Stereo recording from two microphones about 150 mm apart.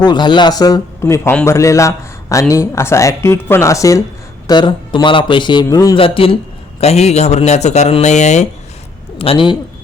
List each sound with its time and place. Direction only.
0.0 s speech: 30° left (ahead or behind)
4.4 s a man's voice: 30° left (ahead or behind)
6.0 s a man's voice: 35° left (ahead or behind)
9.1 s speech: 40° left (ahead or behind)